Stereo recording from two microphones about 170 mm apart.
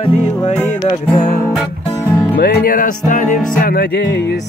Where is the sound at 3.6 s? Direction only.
65° left (ahead or behind); by 4.5 s 80° left.